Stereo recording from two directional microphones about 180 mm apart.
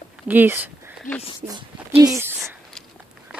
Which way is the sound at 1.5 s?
20° right (ahead or behind).